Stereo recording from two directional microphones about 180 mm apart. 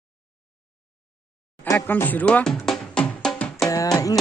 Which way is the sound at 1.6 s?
10° left (ahead or behind).